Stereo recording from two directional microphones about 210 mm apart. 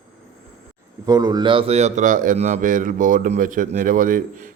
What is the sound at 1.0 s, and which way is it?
Speech, 15° right (ahead or behind).